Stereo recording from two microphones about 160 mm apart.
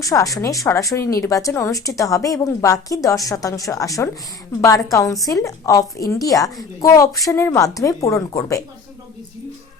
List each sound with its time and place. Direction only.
0.0 s a woman's voice: 20° left (ahead or behind)